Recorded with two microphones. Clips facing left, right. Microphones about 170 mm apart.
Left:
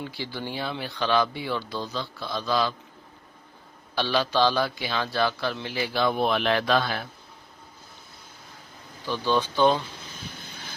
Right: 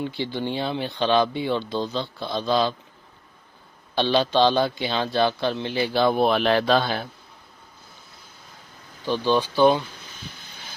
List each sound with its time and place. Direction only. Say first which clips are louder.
0.0 s a man's voice: right 6 dB; 25° right (ahead or behind)
3.9 s a man's voice: right 4 dB; 25° right (ahead or behind)
9.0 s speech: right 3 dB; 15° right (ahead or behind)